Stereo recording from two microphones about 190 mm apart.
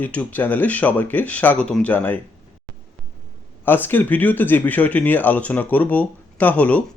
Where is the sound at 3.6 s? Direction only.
10° left (ahead or behind).